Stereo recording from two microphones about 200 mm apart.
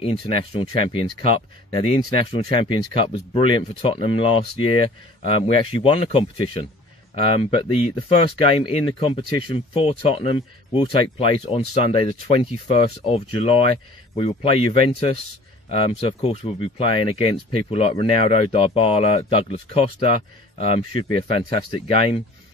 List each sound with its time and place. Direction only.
0.0 s speech: 30° left (ahead or behind)